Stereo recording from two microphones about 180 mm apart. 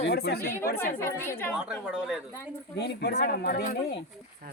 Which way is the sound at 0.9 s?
15° left (ahead or behind).